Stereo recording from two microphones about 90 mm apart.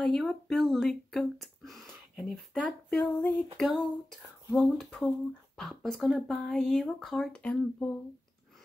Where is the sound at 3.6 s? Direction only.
Centre (ahead or behind).